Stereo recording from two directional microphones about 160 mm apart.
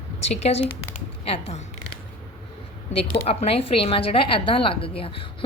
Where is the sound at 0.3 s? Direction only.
40° left (ahead or behind).